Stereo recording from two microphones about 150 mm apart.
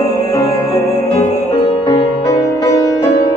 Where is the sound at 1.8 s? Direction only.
25° left (ahead or behind).